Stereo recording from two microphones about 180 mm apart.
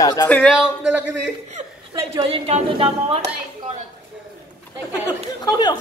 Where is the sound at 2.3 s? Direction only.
35° right (ahead or behind).